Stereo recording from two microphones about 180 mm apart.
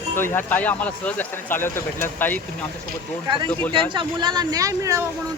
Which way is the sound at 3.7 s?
25° right (ahead or behind).